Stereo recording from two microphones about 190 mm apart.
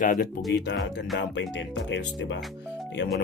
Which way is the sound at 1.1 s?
65° left (ahead or behind).